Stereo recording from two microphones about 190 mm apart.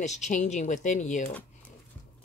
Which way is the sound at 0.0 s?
35° left (ahead or behind).